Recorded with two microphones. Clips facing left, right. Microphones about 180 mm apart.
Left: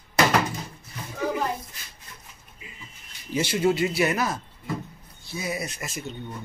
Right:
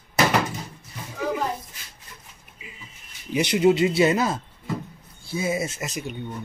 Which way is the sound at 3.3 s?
20° right (ahead or behind).